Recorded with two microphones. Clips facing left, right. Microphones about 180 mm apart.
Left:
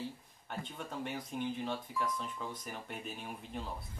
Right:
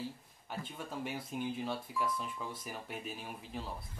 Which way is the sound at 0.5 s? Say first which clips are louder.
Even; 5° right (ahead or behind).